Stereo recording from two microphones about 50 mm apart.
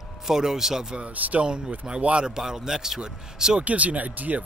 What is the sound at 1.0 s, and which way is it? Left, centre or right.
Speech, right.